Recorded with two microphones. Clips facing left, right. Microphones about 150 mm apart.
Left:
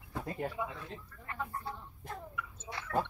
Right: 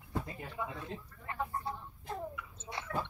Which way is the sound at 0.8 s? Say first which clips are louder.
Right 2 dB; 25° right (ahead or behind).